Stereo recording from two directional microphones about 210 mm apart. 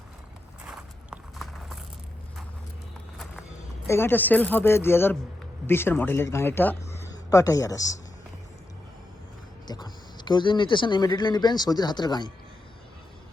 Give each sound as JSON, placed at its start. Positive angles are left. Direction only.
{"t": 0.7, "sound": "walk", "side_deg": -5}
{"t": 3.8, "sound": "speech", "side_deg": 10}
{"t": 9.6, "sound": "speech", "side_deg": 20}